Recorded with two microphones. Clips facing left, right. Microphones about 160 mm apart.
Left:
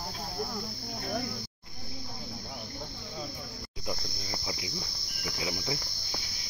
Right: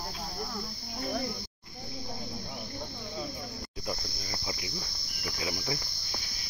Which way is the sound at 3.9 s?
15° left (ahead or behind).